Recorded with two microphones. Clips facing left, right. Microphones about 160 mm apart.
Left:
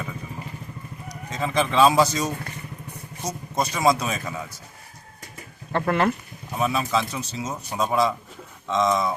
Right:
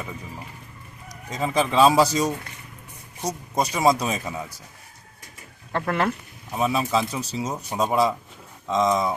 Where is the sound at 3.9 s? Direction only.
35° right (ahead or behind).